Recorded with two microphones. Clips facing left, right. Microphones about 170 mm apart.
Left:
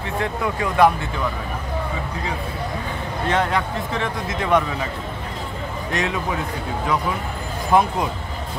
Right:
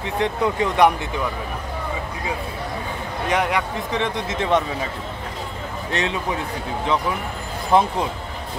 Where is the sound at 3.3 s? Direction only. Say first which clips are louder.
Even; 15° right (ahead or behind).